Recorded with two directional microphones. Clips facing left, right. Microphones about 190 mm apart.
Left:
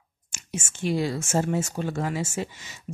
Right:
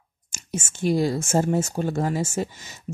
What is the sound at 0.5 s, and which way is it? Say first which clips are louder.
Speech: right 4 dB; 40° right (ahead or behind).